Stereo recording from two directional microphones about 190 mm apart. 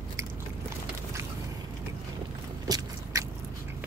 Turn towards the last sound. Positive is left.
turn(degrees=-20)  # may be behind; listen again after turning